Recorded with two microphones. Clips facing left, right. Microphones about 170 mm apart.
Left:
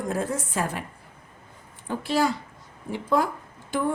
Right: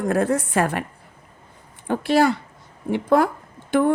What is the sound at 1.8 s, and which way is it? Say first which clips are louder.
Speech: right 6 dB; 65° right (ahead or behind).